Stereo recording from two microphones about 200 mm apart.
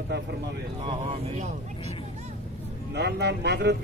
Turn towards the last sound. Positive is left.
turn(degrees=-55)  # may be behind; listen again after turning